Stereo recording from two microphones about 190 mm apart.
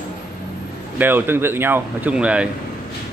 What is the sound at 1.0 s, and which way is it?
Speech, 10° right (ahead or behind).